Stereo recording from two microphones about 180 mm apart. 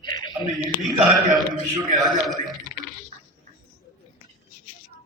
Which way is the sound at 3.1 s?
35° right (ahead or behind).